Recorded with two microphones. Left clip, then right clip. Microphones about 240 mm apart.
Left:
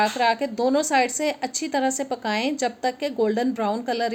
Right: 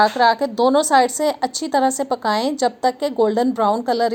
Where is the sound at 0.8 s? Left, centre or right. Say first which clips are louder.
Right 6 dB; centre.